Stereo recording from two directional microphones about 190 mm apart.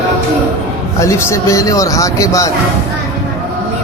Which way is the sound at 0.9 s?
15° left (ahead or behind).